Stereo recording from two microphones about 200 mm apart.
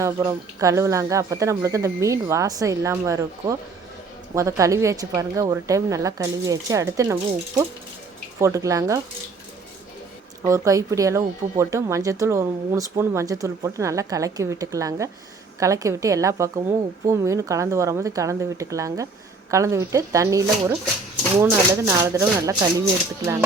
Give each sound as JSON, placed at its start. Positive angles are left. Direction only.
{"t": 0.0, "sound": "speech", "side_deg": -15}
{"t": 10.4, "sound": "speech", "side_deg": -15}